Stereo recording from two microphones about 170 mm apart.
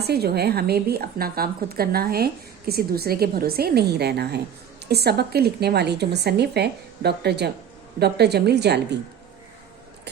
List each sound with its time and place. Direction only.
0.0 s a woman's voice: 70° right (ahead or behind)